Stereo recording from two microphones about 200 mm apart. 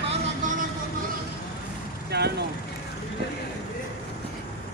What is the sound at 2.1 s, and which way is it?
Vehicle, 55° right (ahead or behind).